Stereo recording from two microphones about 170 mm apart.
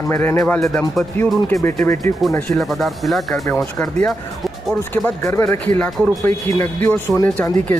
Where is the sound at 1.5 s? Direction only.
15° left (ahead or behind).